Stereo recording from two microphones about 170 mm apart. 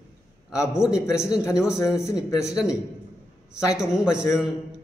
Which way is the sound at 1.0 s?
15° left (ahead or behind).